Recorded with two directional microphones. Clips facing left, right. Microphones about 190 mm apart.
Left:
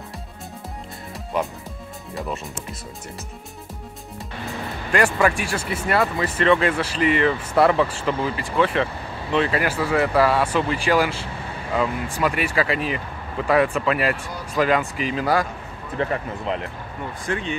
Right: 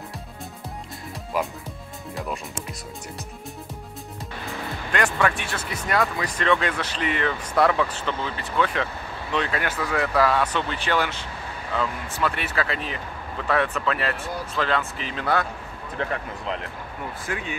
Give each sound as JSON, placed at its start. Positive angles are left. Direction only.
{"t": 1.3, "sound": "speech", "side_deg": 0}
{"t": 4.9, "sound": "speech", "side_deg": 5}